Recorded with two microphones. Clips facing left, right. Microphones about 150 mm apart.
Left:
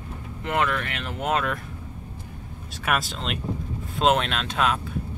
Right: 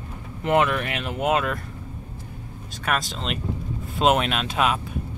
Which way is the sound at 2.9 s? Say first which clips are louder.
Even; centre (ahead or behind).